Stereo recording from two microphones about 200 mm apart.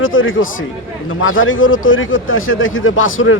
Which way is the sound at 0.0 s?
80° left.